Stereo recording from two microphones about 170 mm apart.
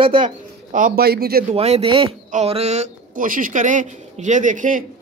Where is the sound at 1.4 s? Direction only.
40° right (ahead or behind).